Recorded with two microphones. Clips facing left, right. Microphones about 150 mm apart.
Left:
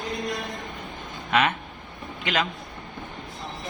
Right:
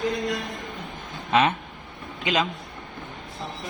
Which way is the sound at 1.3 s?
25° right (ahead or behind).